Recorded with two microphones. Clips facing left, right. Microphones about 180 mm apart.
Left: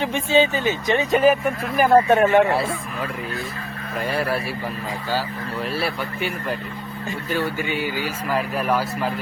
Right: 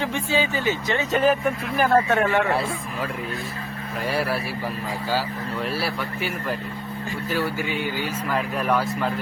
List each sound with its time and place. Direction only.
0.0 s speech: 20° left (ahead or behind)
2.1 s speech: 20° left (ahead or behind)
2.5 s speech: centre (ahead or behind)
7.3 s speech: centre (ahead or behind)